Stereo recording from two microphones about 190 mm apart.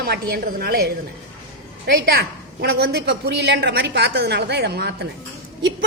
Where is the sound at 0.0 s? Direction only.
55° right (ahead or behind).